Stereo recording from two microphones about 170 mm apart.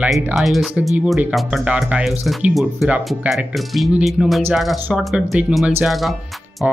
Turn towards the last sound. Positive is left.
turn(degrees=0)  # may be behind; listen again after turning